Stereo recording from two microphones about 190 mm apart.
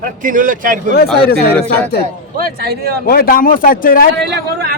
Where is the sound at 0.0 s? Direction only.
45° right (ahead or behind).